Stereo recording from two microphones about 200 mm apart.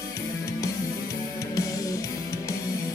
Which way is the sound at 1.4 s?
15° left (ahead or behind).